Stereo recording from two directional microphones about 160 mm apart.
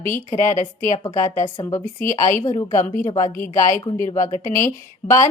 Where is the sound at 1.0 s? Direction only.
20° left (ahead or behind).